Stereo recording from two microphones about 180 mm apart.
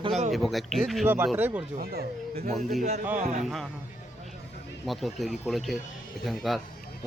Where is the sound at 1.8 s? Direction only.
60° right (ahead or behind).